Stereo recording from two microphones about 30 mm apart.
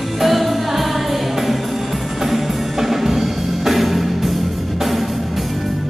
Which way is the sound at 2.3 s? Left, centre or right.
Centre.